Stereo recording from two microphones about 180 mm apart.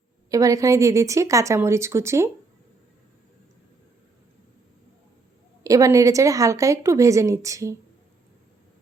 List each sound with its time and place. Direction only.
0.3 s a woman's voice: 20° right (ahead or behind)
5.6 s a woman's voice: 20° right (ahead or behind)